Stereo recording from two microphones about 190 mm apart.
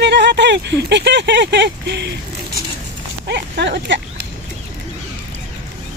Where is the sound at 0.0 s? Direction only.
65° right (ahead or behind).